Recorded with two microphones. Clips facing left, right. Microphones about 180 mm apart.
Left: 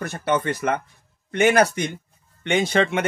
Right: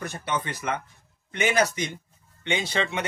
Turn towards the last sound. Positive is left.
turn(degrees=50)  # may be behind; listen again after turning